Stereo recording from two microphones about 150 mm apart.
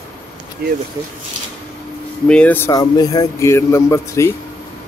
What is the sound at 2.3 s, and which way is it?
Speech, 10° left (ahead or behind).